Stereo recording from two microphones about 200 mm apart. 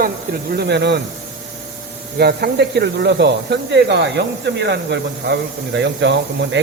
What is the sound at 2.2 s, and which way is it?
Speech, 50° right (ahead or behind).